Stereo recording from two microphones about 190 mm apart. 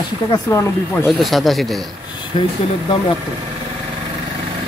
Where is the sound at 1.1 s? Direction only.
Centre (ahead or behind).